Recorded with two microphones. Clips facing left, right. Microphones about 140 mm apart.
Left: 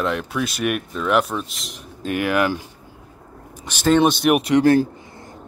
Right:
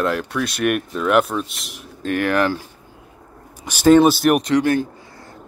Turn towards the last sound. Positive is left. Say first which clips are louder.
# left 4 dB
turn(degrees=30)  # may be behind; listen again after turning